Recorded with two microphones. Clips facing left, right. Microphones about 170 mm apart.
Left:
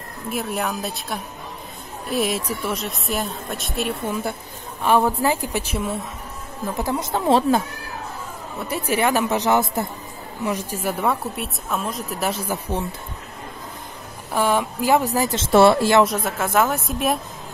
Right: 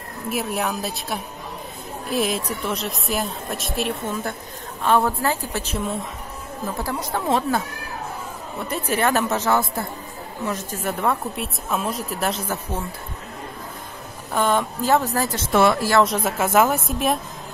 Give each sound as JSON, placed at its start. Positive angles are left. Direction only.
{"t": 0.3, "sound": "a woman's voice", "side_deg": 0}
{"t": 8.6, "sound": "a woman's voice", "side_deg": 10}
{"t": 14.3, "sound": "a woman's voice", "side_deg": 10}
{"t": 15.3, "sound": "speech", "side_deg": 30}
{"t": 16.0, "sound": "speech", "side_deg": 0}